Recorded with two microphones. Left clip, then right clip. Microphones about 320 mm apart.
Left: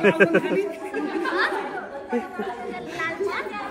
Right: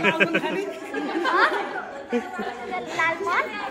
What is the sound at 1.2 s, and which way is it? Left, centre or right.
Speech, centre.